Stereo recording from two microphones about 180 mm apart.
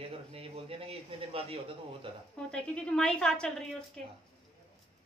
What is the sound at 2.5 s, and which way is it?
A woman's voice, 5° left (ahead or behind).